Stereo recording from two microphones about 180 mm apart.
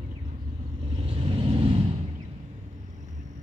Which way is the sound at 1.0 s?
30° right (ahead or behind).